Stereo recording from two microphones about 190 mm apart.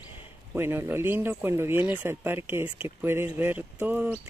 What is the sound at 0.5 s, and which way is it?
Speech, 10° right (ahead or behind).